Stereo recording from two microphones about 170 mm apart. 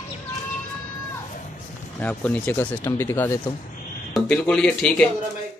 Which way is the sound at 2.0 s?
10° left (ahead or behind).